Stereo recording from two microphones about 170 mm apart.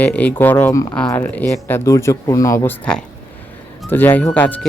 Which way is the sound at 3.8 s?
10° left (ahead or behind).